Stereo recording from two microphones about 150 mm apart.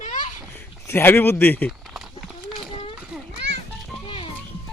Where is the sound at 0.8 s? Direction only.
15° left (ahead or behind).